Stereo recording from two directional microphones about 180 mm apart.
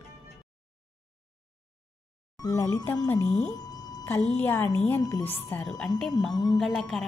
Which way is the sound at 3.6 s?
20° left (ahead or behind).